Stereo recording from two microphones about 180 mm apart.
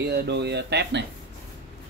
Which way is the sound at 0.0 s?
70° right (ahead or behind).